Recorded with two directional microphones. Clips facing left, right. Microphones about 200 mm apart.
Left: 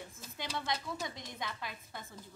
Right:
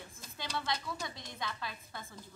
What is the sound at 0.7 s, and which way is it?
A woman's voice, 20° left (ahead or behind).